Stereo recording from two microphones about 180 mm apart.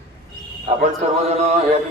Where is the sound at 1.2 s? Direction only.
35° right (ahead or behind).